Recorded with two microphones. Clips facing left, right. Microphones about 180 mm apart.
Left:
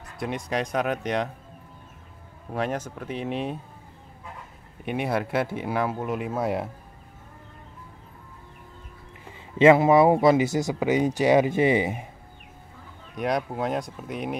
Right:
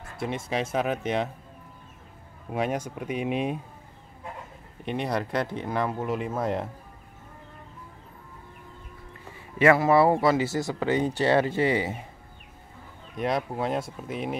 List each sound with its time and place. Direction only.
0.5 s speech: 5° right (ahead or behind)
2.5 s speech: 10° right (ahead or behind)
4.8 s speech: 5° left (ahead or behind)
9.6 s speech: 20° left (ahead or behind)
13.1 s speech: centre (ahead or behind)